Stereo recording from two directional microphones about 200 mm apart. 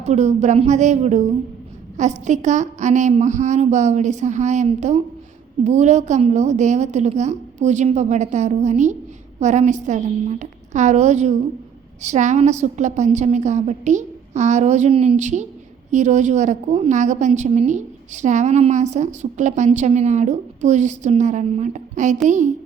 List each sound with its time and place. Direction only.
0.0 s a woman's voice: 35° right (ahead or behind)